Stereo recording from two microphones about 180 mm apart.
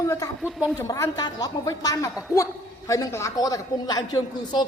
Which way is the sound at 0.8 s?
20° left (ahead or behind).